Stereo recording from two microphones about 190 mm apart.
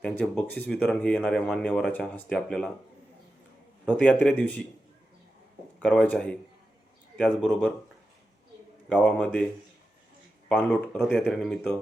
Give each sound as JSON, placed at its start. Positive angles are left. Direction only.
{"t": 0.0, "sound": "speech", "side_deg": 10}
{"t": 3.8, "sound": "speech", "side_deg": 5}
{"t": 5.8, "sound": "speech", "side_deg": 5}
{"t": 9.0, "sound": "speech", "side_deg": 5}
{"t": 10.6, "sound": "speech", "side_deg": 10}